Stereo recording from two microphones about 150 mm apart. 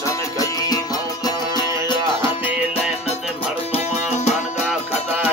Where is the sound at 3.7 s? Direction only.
40° left (ahead or behind).